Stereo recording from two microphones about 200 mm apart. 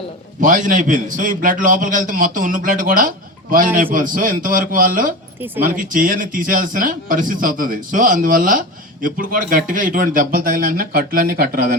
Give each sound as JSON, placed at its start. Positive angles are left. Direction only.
{"t": 0.3, "sound": "a man's voice", "side_deg": -40}